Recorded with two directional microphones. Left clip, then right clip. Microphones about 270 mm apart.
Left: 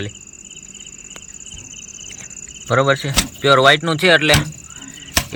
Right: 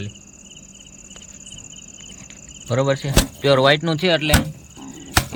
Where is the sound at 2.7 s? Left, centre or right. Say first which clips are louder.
Left 5 dB; centre.